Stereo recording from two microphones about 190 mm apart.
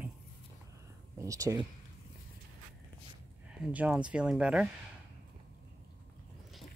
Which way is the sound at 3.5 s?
5° right (ahead or behind).